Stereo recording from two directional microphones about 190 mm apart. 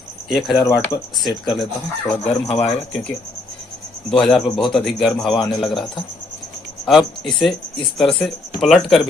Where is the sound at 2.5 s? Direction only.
30° left (ahead or behind).